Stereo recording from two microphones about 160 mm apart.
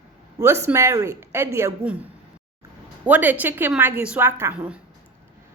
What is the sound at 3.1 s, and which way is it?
Speech, 10° right (ahead or behind).